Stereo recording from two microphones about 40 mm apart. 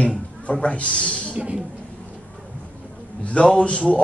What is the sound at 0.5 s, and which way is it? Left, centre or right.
Speech, left.